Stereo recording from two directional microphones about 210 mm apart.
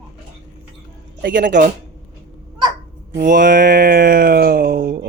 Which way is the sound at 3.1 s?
40° right (ahead or behind).